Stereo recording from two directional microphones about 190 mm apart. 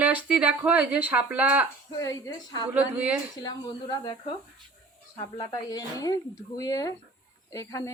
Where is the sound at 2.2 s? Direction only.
20° left (ahead or behind).